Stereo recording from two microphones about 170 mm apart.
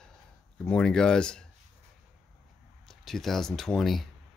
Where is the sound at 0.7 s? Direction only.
5° left (ahead or behind).